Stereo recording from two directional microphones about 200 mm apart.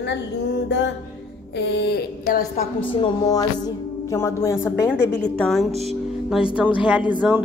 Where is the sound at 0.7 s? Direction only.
65° left (ahead or behind).